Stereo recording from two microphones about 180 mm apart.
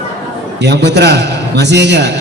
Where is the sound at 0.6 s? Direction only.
70° right (ahead or behind).